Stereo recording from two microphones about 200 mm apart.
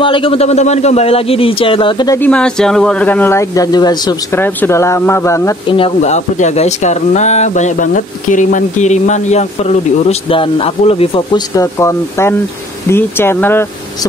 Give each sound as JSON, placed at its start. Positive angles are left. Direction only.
{"t": 0.0, "sound": "a man's voice", "side_deg": 25}
{"t": 2.1, "sound": "speech", "side_deg": 5}
{"t": 5.7, "sound": "speech", "side_deg": 25}